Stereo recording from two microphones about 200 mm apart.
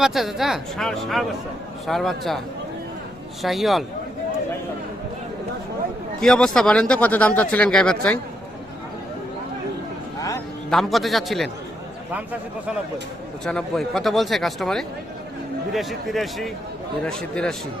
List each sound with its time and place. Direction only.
0.0 s speech: centre (ahead or behind)
3.4 s speech: centre (ahead or behind)
6.1 s speech: 5° left (ahead or behind)
10.2 s music: 15° left (ahead or behind)
10.7 s speech: centre (ahead or behind)
13.4 s speech: 5° left (ahead or behind)